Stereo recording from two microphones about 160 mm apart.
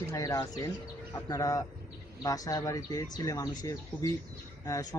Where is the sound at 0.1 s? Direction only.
20° left (ahead or behind).